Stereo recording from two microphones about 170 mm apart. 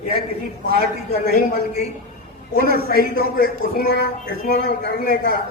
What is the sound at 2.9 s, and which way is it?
A man's voice, 60° left (ahead or behind).